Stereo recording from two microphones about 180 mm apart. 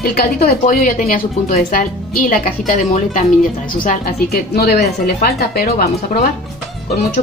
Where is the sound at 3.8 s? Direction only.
55° left (ahead or behind).